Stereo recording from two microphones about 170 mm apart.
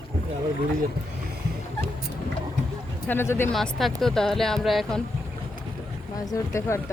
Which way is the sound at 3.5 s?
Centre (ahead or behind).